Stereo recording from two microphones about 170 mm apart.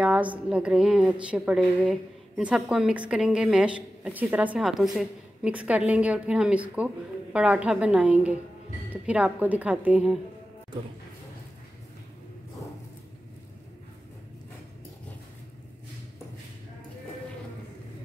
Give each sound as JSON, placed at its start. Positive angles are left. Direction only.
{"t": 0.0, "sound": "a woman's voice", "side_deg": -5}